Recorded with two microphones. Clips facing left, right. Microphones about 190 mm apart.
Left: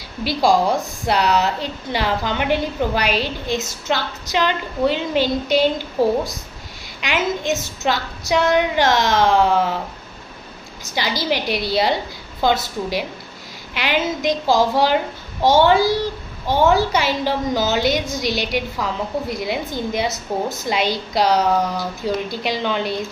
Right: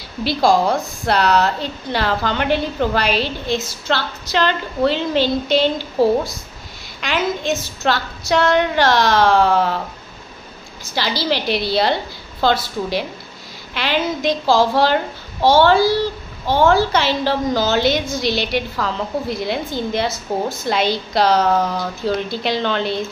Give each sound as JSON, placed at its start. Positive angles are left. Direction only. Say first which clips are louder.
{"t": 0.2, "sound": "a woman's voice", "louder": "right 1 dB", "side_deg": 15}
{"t": 7.0, "sound": "a woman's voice", "louder": "right 1 dB", "side_deg": 15}
{"t": 11.0, "sound": "a woman's voice", "louder": "right 1 dB", "side_deg": 15}